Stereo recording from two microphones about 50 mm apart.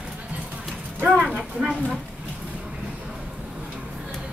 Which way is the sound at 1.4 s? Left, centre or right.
Centre.